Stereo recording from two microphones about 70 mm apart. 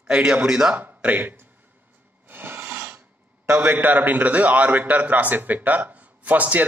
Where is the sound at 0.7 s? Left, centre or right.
Right.